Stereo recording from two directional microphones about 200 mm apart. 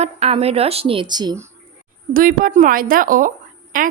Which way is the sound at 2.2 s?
45° right (ahead or behind).